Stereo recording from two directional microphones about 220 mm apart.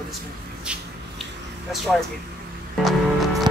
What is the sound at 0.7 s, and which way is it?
Speech, 5° right (ahead or behind).